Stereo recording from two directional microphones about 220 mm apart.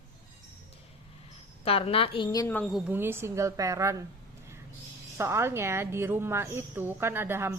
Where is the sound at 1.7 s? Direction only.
25° left (ahead or behind); by 2.8 s 5° left (ahead or behind).